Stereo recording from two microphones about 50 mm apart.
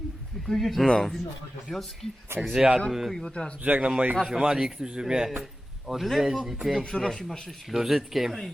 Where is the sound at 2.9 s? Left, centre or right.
Centre.